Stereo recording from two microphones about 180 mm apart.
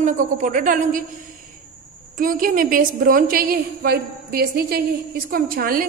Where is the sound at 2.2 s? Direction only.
50° right (ahead or behind).